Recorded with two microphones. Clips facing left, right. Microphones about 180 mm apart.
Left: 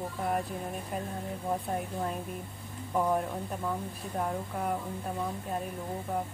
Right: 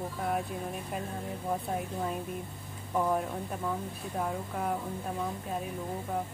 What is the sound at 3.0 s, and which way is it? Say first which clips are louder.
Speech: left 1 dB; 5° left (ahead or behind).